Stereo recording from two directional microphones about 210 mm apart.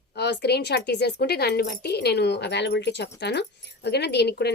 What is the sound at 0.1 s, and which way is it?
Speech, 50° left (ahead or behind).